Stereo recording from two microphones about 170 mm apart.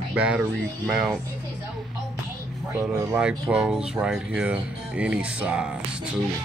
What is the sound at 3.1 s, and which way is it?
Speech, 5° right (ahead or behind).